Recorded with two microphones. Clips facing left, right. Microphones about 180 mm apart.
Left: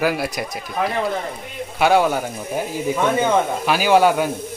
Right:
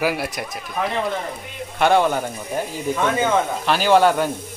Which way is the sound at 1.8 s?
5° left (ahead or behind).